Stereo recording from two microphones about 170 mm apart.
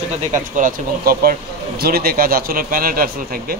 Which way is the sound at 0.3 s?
50° right (ahead or behind).